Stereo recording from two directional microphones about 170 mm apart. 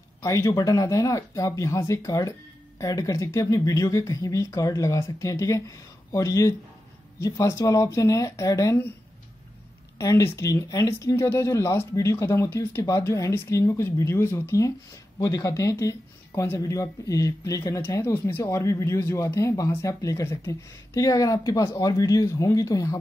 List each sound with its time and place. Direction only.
0.2 s speech: 20° left (ahead or behind)
9.9 s speech: 20° left (ahead or behind)